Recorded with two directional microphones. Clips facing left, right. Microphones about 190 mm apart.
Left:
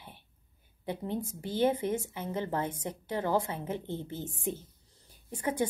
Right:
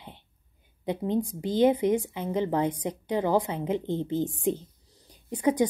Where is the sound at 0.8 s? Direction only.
15° right (ahead or behind).